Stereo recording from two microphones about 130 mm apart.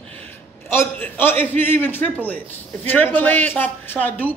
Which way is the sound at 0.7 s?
15° left (ahead or behind).